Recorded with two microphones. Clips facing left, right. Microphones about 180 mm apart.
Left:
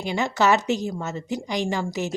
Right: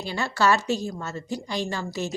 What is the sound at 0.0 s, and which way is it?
A woman's voice, 15° left (ahead or behind).